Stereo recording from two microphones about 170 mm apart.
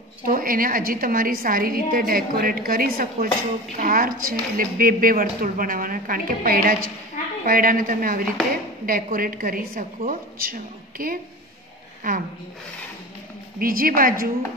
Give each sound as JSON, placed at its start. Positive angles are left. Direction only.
{"t": 0.2, "sound": "a woman's voice", "side_deg": -55}
{"t": 13.6, "sound": "a woman's voice", "side_deg": -55}